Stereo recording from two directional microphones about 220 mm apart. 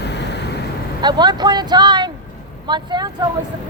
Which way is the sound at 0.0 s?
50° left (ahead or behind).